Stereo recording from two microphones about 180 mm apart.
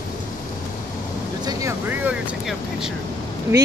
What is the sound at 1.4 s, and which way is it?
Speech, 15° right (ahead or behind).